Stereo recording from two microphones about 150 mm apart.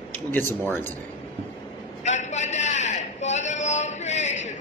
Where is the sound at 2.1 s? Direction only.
50° left (ahead or behind).